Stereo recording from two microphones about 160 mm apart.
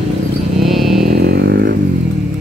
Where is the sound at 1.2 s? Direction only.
85° right.